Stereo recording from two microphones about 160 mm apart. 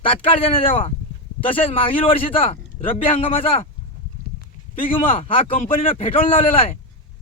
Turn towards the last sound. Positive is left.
turn(degrees=35)  # may be behind; listen again after turning